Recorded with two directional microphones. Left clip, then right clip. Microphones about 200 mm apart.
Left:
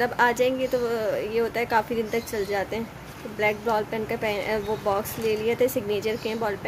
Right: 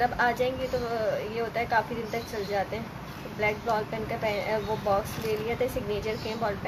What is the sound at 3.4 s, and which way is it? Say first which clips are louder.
Speech: left 4 dB; 55° left (ahead or behind).